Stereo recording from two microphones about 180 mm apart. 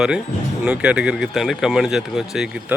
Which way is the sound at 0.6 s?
5° right (ahead or behind).